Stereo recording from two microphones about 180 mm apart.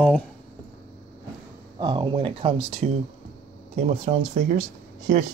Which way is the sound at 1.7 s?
25° right (ahead or behind).